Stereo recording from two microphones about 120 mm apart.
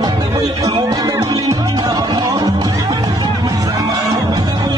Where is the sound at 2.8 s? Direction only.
40° right (ahead or behind).